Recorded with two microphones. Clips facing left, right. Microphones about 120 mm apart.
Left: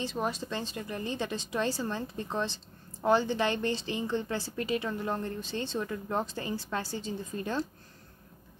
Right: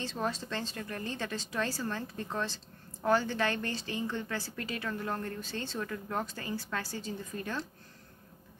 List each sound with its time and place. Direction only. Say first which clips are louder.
0.0 s a woman's voice: left 2 dB; 15° left (ahead or behind)